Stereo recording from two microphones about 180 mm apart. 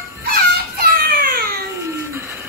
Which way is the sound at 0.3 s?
55° right (ahead or behind).